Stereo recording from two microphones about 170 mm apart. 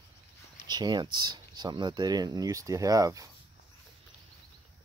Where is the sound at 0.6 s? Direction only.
25° right (ahead or behind).